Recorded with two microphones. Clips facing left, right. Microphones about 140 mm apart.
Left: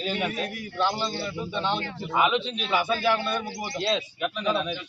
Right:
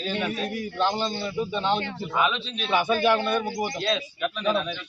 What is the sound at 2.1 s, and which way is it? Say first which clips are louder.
Speech: left 2 dB; 10° left (ahead or behind).